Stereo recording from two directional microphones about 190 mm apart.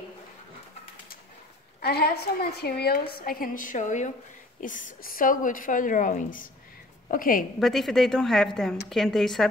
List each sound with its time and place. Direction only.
1.8 s a woman's voice: 55° left (ahead or behind)
7.6 s a woman's voice: centre (ahead or behind)